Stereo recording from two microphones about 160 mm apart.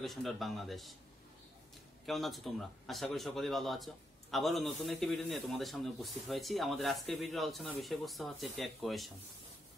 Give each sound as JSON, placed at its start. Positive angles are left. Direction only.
{"t": 0.0, "sound": "speech", "side_deg": 0}
{"t": 2.0, "sound": "speech", "side_deg": 0}